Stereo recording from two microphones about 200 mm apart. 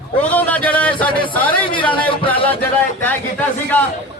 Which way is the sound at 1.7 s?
25° left (ahead or behind).